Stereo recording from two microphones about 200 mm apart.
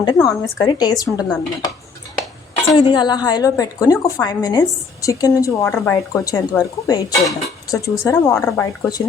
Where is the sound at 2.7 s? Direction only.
20° left (ahead or behind).